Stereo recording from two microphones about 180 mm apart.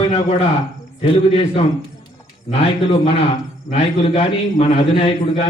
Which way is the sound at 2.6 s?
30° left (ahead or behind).